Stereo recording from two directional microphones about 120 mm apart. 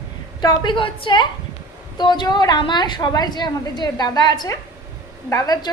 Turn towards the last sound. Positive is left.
turn(degrees=30)  # may be behind; listen again after turning